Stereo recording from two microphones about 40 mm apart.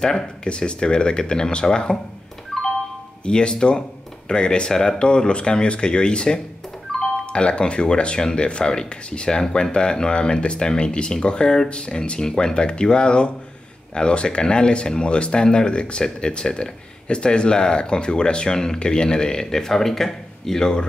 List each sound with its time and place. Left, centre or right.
0.0 s speech: centre
3.3 s speech: centre